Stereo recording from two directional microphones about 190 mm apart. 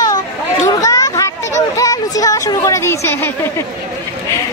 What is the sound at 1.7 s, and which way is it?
Speech, 20° left (ahead or behind).